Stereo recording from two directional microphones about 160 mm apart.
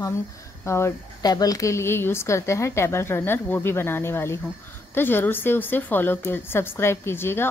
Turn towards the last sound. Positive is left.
turn(degrees=15)  # may be behind; listen again after turning